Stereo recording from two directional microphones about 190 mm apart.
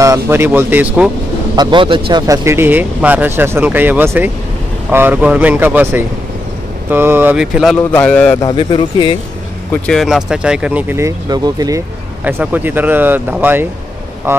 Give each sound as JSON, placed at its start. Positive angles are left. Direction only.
{"t": 0.0, "sound": "speech", "side_deg": -15}
{"t": 1.6, "sound": "speech", "side_deg": -25}
{"t": 7.9, "sound": "a man's voice", "side_deg": 5}
{"t": 8.4, "sound": "speech", "side_deg": 25}
{"t": 9.8, "sound": "speech", "side_deg": 0}